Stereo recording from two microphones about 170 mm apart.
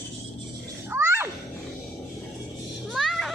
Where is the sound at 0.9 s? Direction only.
15° right (ahead or behind).